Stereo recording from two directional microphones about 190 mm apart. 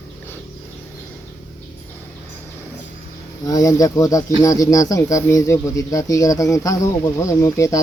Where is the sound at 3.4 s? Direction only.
20° left (ahead or behind).